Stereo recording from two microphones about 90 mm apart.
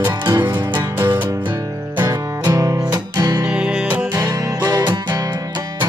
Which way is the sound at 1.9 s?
45° right (ahead or behind).